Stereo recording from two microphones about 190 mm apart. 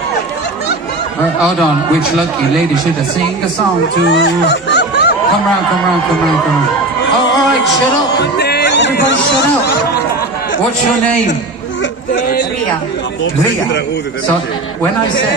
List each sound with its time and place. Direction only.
4.1 s speech: 65° left (ahead or behind)
8.2 s music: 60° left (ahead or behind)